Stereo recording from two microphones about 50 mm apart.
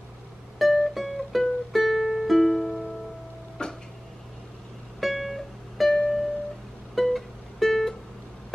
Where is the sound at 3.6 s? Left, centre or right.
Centre.